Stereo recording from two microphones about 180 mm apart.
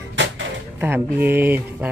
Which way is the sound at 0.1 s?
90° right.